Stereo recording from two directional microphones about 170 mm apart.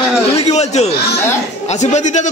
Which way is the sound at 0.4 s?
40° left (ahead or behind).